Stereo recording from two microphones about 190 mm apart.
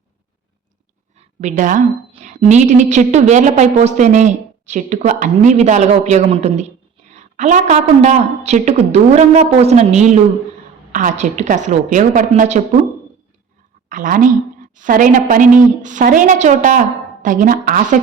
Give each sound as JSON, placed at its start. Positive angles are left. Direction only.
{"t": 1.2, "sound": "a woman's voice", "side_deg": -35}
{"t": 13.9, "sound": "a woman's voice", "side_deg": -45}